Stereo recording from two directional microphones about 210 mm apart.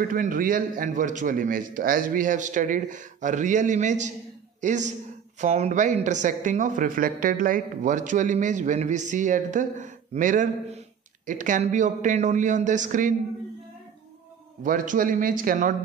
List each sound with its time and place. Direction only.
0.1 s a man's voice: 40° right (ahead or behind)
14.6 s speech: 40° right (ahead or behind)